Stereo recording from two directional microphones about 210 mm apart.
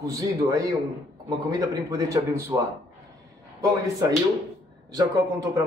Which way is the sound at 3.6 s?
15° right (ahead or behind).